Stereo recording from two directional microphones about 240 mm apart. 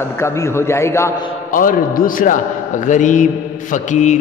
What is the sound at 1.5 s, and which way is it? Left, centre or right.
A man's voice, left.